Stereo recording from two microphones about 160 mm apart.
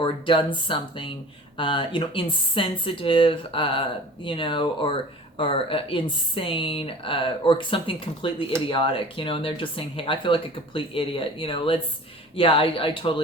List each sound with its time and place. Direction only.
0.0 s speech: 30° left (ahead or behind)